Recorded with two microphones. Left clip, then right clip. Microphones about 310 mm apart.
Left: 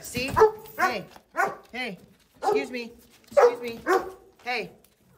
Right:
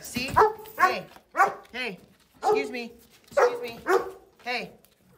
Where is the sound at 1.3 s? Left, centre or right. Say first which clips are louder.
Right 3 dB; centre.